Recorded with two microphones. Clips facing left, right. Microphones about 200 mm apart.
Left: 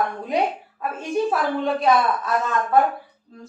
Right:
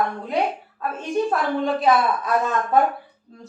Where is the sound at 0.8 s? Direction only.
5° left (ahead or behind).